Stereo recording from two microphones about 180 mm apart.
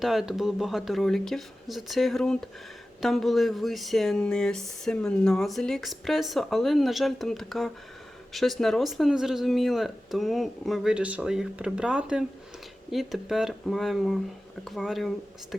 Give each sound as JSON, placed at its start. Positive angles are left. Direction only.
{"t": 0.0, "sound": "speech", "side_deg": 0}